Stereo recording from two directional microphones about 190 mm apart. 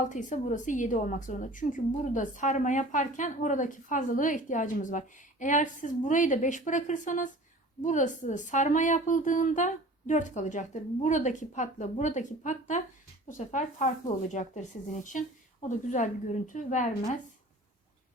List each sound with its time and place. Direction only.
0.0 s a woman's voice: 40° left (ahead or behind)